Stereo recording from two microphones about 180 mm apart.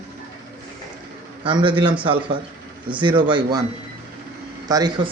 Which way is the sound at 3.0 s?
25° right (ahead or behind).